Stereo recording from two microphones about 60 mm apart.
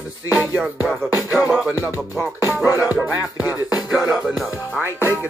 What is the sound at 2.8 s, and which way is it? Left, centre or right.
Music, right.